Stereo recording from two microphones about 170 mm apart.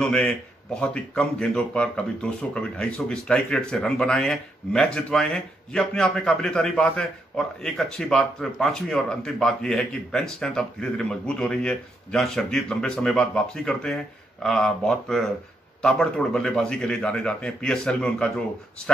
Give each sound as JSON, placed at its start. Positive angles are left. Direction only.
{"t": 0.0, "sound": "speech", "side_deg": 5}